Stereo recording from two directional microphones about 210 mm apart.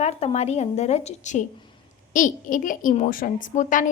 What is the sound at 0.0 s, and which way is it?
A woman's voice, 30° left (ahead or behind).